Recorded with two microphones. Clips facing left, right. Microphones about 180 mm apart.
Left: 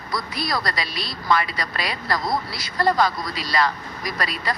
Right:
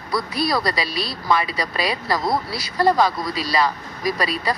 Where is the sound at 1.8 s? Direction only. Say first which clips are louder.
Right 3 dB; 30° right (ahead or behind).